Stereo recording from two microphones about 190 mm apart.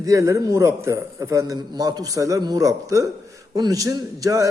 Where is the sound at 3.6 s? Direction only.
20° right (ahead or behind).